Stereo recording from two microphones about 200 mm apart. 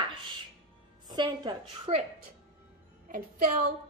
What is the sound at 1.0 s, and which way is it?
A woman's voice, 20° right (ahead or behind).